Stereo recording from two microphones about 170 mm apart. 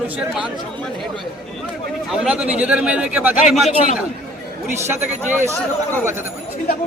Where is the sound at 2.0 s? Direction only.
5° right (ahead or behind).